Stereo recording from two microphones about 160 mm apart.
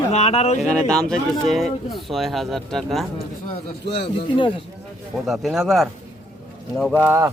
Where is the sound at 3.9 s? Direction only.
90° left.